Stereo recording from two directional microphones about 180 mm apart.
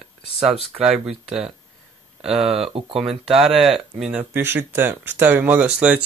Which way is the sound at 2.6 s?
30° right (ahead or behind).